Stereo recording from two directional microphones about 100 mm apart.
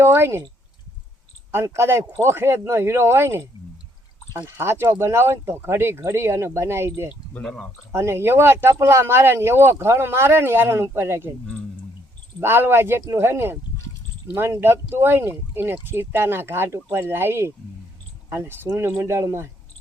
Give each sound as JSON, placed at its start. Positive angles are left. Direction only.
{"t": 0.0, "sound": "speech", "side_deg": -25}
{"t": 1.5, "sound": "speech", "side_deg": -25}
{"t": 7.4, "sound": "speech", "side_deg": 5}
{"t": 7.9, "sound": "speech", "side_deg": -25}
{"t": 12.4, "sound": "speech", "side_deg": -20}